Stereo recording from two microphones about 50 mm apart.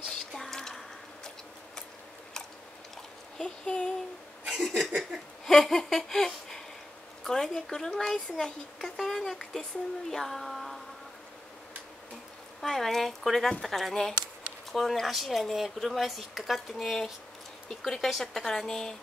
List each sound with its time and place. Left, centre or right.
0.3 s squish: centre
3.3 s child singing: centre
4.6 s speech: centre
5.4 s a sound: centre
7.2 s speech: centre
12.6 s speech: centre